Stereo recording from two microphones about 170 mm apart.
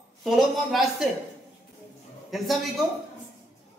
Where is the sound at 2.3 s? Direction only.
Centre (ahead or behind).